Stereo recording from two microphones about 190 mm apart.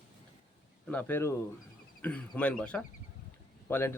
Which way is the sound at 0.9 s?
10° left (ahead or behind).